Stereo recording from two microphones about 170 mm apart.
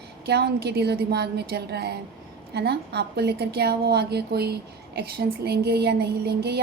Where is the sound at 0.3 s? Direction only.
70° right (ahead or behind).